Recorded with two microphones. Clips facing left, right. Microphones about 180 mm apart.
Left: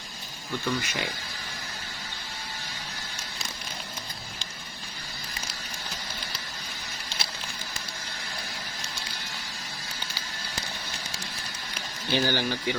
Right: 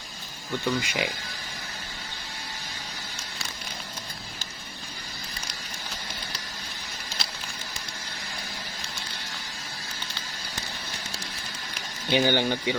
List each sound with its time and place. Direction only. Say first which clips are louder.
0.6 s speech: right 3 dB; 15° right (ahead or behind)
12.1 s speech: right 4 dB; 20° right (ahead or behind)